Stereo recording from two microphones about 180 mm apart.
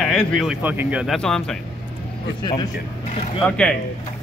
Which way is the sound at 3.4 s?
5° left (ahead or behind).